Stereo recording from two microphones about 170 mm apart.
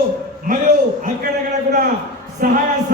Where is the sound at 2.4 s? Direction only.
55° right (ahead or behind).